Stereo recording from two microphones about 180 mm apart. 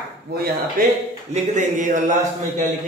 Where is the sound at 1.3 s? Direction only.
40° right (ahead or behind).